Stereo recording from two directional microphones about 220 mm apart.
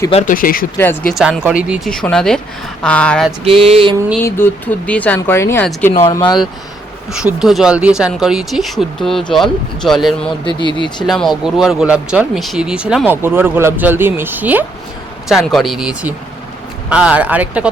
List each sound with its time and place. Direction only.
0.1 s speech: 35° left (ahead or behind)
0.8 s speech: 10° left (ahead or behind)
1.1 s speech: 5° right (ahead or behind)
3.4 s a sound: 25° right (ahead or behind)
4.2 s speech: 10° left (ahead or behind)
7.1 s speech: 5° right (ahead or behind)
10.6 s speech: 20° left (ahead or behind)
11.0 s speech: centre (ahead or behind)